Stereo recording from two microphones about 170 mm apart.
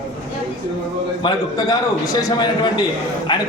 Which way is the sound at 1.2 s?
25° left (ahead or behind).